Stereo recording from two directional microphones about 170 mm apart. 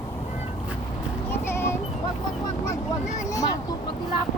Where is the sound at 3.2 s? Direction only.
20° left (ahead or behind).